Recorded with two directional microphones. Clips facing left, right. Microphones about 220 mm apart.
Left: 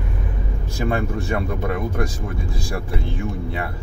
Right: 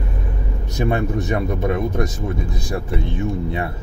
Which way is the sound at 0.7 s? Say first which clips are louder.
Right 2 dB; 20° right (ahead or behind).